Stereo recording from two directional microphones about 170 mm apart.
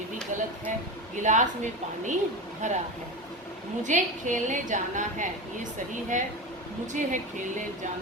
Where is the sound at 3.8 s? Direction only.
45° right (ahead or behind).